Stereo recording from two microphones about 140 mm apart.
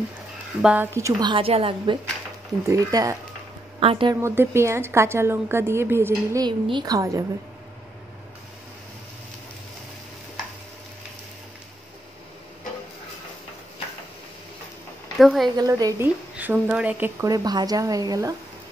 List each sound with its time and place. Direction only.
0.6 s a woman's voice: 10° right (ahead or behind)
0.9 s speech: 20° right (ahead or behind)
1.3 s a woman's voice: 40° right (ahead or behind)
2.6 s speech: 25° right (ahead or behind)
3.8 s a woman's voice: 40° right (ahead or behind)
4.1 s a woman's voice: 20° right (ahead or behind)
6.4 s speech: 30° right (ahead or behind)
15.1 s speech: centre (ahead or behind)
15.5 s speech: 25° right (ahead or behind)
16.3 s a woman's voice: 10° right (ahead or behind)
17.2 s speech: 25° right (ahead or behind)